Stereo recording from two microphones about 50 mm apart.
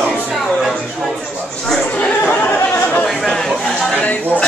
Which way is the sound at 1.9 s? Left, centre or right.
Left.